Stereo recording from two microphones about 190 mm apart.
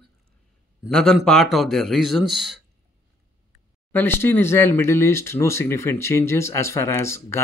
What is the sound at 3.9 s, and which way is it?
Speech, 10° left (ahead or behind).